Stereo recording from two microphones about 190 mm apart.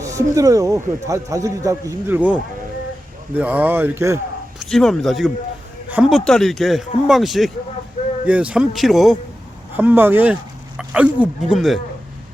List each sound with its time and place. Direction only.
0.0 s a man's voice: 15° right (ahead or behind)
4.6 s a man's voice: centre (ahead or behind)